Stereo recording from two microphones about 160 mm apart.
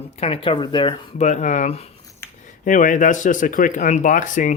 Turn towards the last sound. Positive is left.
turn(degrees=50)  # may be behind; listen again after turning